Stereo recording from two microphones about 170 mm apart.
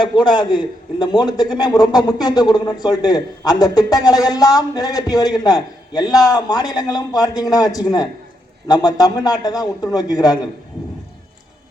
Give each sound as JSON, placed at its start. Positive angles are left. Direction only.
{"t": 0.0, "sound": "a man's voice", "side_deg": 25}